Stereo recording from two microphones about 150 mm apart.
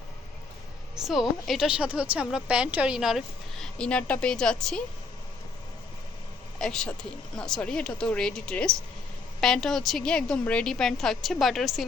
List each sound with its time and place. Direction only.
0.9 s a woman's voice: centre (ahead or behind)
6.6 s a woman's voice: 5° left (ahead or behind)